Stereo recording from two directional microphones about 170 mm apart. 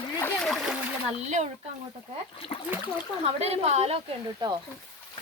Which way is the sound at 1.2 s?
40° right (ahead or behind).